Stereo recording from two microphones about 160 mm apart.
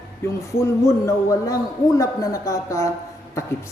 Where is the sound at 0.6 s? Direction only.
20° left (ahead or behind).